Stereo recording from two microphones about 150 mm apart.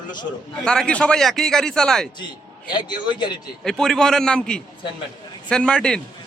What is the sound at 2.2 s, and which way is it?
A man's voice, 30° left (ahead or behind).